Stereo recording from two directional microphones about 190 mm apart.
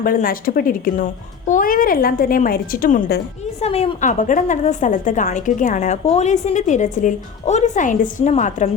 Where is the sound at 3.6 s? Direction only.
30° left (ahead or behind).